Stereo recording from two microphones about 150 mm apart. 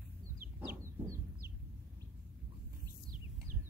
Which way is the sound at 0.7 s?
20° right (ahead or behind).